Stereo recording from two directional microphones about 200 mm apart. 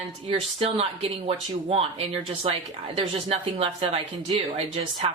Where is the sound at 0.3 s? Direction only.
30° right (ahead or behind).